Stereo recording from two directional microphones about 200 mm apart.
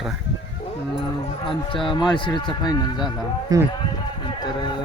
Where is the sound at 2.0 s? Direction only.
25° left (ahead or behind).